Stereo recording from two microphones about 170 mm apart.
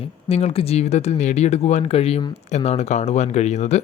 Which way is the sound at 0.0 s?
35° left (ahead or behind).